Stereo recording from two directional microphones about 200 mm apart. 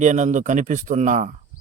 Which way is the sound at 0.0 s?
35° right (ahead or behind).